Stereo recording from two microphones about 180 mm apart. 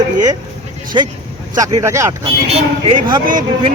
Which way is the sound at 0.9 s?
25° right (ahead or behind).